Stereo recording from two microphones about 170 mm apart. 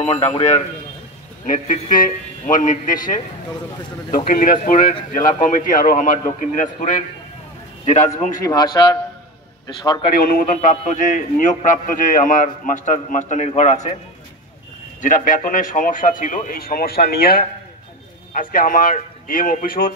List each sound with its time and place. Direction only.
0.0 s a man's voice: 35° left (ahead or behind)
1.4 s a man's voice: 50° left (ahead or behind)
4.3 s a man's voice: 50° left (ahead or behind)
8.5 s a man's voice: 25° left (ahead or behind)
10.1 s a man's voice: 55° left (ahead or behind)
15.0 s a man's voice: 50° left (ahead or behind)